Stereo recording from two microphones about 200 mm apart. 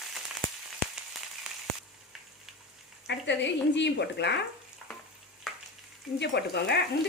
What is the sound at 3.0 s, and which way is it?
Speech, 60° left (ahead or behind).